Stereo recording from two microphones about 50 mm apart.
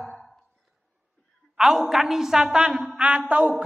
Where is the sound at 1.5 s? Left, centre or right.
Centre.